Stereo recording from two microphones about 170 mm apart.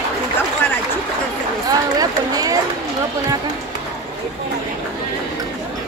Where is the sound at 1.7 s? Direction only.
20° right (ahead or behind).